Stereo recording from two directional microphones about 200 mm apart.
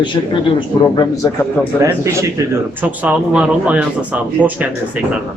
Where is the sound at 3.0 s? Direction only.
5° right (ahead or behind).